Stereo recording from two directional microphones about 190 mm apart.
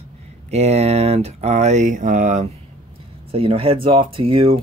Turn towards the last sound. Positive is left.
turn(degrees=-30)  # may be behind; listen again after turning